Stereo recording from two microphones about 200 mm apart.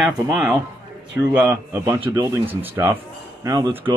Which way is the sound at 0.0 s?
5° right (ahead or behind).